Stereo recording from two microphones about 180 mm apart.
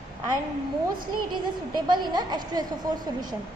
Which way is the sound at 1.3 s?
25° right (ahead or behind).